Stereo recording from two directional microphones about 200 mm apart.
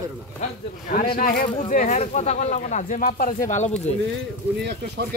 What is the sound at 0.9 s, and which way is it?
Speech, 45° left (ahead or behind).